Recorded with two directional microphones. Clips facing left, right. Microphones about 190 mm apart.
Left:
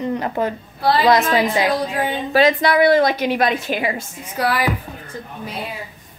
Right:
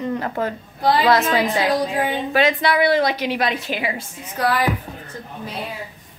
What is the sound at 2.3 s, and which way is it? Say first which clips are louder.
A woman's voice: left 4 dB; 40° left (ahead or behind).